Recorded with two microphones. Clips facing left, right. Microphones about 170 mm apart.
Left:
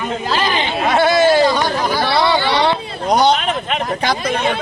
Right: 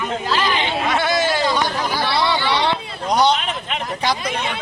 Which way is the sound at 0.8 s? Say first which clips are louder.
Left 9 dB; 35° left (ahead or behind).